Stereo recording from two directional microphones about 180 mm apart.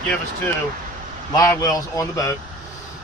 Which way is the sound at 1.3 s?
20° left (ahead or behind).